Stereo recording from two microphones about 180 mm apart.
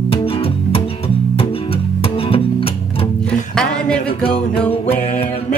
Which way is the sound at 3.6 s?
5° left (ahead or behind).